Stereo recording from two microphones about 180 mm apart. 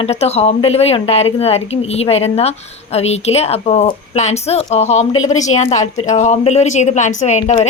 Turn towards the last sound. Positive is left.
turn(degrees=40)  # may be behind; listen again after turning